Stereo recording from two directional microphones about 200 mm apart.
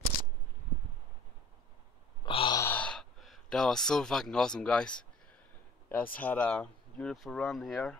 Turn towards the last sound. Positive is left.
turn(degrees=0)  # may be behind; listen again after turning